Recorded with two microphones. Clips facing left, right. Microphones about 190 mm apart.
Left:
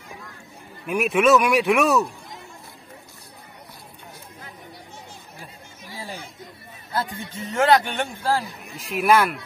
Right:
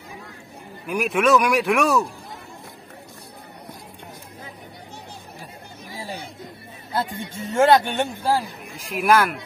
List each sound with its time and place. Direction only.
0.8 s speech: centre (ahead or behind)
6.9 s a man's voice: 25° right (ahead or behind)
8.9 s speech: centre (ahead or behind)